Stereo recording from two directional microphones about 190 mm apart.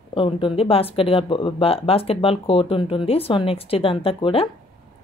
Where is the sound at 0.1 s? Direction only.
30° left (ahead or behind).